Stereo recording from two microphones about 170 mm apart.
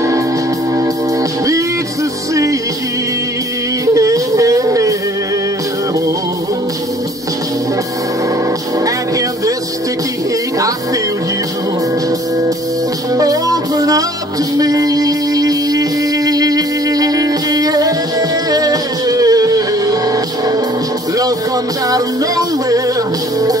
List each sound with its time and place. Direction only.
3.8 s music: 20° right (ahead or behind)
13.1 s music: 20° right (ahead or behind)